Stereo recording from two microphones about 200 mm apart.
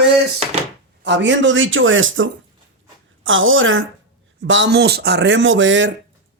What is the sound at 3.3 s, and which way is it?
Speech, 75° right (ahead or behind).